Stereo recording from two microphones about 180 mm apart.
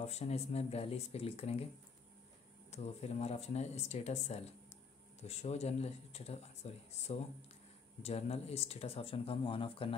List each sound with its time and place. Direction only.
0.0 s speech: 35° left (ahead or behind)
2.7 s speech: 35° left (ahead or behind)